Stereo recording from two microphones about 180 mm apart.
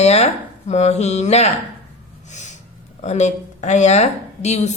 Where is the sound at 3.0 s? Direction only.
40° left (ahead or behind).